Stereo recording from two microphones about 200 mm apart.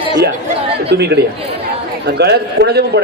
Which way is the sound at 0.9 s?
55° right (ahead or behind).